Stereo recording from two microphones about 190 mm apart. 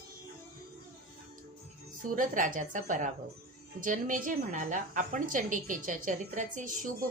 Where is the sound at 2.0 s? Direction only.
45° right (ahead or behind).